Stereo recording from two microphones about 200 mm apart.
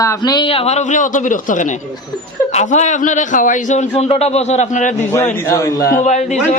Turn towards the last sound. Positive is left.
turn(degrees=35)  # may be behind; listen again after turning